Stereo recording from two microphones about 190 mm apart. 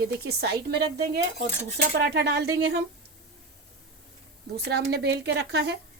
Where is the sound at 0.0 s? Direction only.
55° right (ahead or behind).